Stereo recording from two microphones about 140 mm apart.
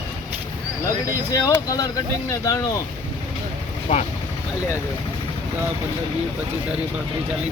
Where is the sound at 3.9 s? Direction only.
50° left (ahead or behind).